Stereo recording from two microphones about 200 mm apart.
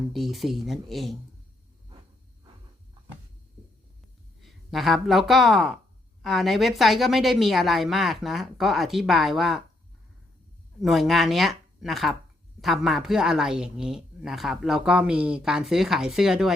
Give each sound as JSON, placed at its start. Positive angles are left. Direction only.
{"t": 0.1, "sound": "speech", "side_deg": 0}
{"t": 4.4, "sound": "speech", "side_deg": 0}
{"t": 10.8, "sound": "speech", "side_deg": 0}